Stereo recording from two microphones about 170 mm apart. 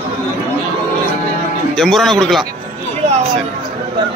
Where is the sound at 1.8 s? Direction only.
Centre (ahead or behind).